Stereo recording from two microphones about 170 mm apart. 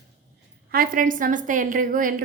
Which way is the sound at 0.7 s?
55° right (ahead or behind).